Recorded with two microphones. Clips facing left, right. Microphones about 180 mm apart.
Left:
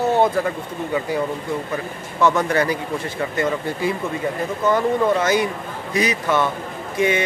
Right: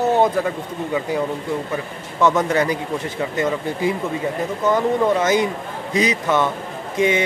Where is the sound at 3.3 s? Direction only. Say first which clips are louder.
Even; 15° right (ahead or behind).